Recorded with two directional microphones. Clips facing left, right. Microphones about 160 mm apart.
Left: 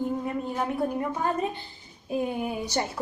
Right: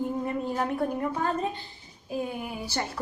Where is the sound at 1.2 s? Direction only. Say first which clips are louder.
Left 1 dB; 15° left (ahead or behind).